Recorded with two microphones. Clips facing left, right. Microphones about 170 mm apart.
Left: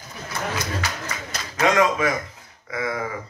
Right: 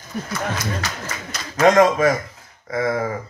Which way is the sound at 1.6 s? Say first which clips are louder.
Right 5 dB; 40° right (ahead or behind).